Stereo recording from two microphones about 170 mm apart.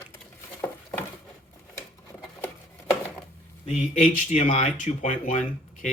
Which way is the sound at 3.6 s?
40° left (ahead or behind).